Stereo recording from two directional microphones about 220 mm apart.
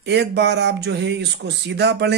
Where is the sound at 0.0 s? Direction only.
50° right (ahead or behind).